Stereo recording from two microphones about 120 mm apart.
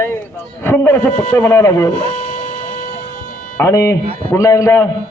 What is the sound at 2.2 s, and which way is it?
Music, 90° left.